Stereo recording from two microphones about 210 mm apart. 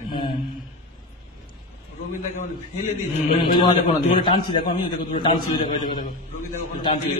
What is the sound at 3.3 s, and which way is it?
A man's voice, 25° left (ahead or behind).